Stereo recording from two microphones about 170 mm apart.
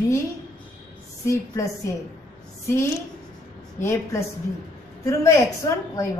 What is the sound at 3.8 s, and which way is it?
A woman's voice, 15° left (ahead or behind).